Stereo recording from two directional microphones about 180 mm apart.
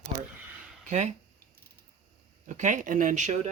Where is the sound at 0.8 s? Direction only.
40° right (ahead or behind).